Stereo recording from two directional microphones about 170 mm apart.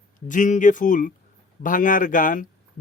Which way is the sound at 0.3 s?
50° left (ahead or behind).